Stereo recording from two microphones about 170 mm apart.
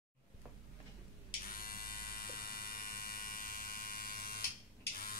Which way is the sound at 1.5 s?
60° left (ahead or behind).